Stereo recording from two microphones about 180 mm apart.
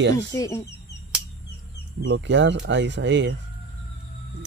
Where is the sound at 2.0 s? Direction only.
85° right.